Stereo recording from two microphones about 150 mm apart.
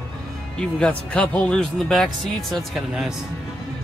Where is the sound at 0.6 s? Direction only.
5° left (ahead or behind).